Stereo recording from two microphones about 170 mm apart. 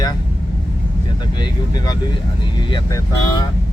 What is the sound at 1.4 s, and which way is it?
Speech, 25° left (ahead or behind).